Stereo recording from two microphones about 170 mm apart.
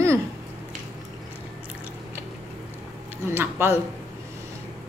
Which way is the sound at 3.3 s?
15° right (ahead or behind).